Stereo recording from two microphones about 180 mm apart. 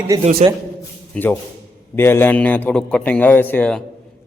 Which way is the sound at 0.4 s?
40° right (ahead or behind).